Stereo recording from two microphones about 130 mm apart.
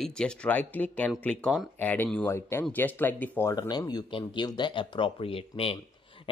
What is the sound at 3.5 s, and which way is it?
Speech, 30° left (ahead or behind).